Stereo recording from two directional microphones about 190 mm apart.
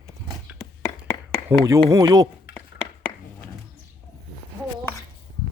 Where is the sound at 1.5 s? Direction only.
15° right (ahead or behind).